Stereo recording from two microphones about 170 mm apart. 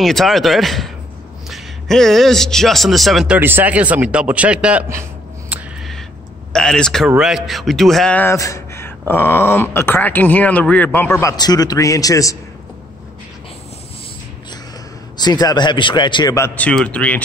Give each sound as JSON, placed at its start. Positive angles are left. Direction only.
{"t": 0.0, "sound": "speech", "side_deg": 0}
{"t": 3.3, "sound": "speech", "side_deg": -10}
{"t": 5.5, "sound": "a sound", "side_deg": 0}
{"t": 6.5, "sound": "a man's voice", "side_deg": 5}
{"t": 15.1, "sound": "a man's voice", "side_deg": 25}
{"t": 16.3, "sound": "a man's voice", "side_deg": 10}